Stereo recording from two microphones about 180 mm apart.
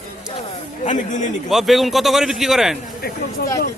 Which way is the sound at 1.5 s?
Centre (ahead or behind).